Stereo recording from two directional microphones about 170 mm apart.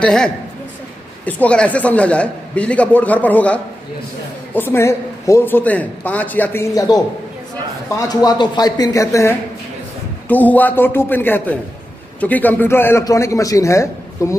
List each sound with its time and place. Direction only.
0.0 s a man's voice: 5° left (ahead or behind); by 7.0 s 20° left (ahead or behind)
8.0 s a man's voice: 20° left (ahead or behind)